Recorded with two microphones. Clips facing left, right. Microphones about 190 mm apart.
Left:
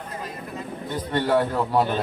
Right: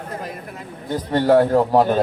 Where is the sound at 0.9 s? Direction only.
45° right (ahead or behind).